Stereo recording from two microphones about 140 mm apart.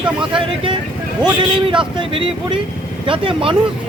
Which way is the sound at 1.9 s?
35° right (ahead or behind).